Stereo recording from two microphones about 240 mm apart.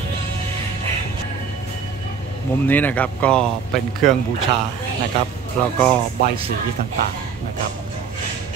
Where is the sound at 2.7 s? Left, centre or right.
Centre.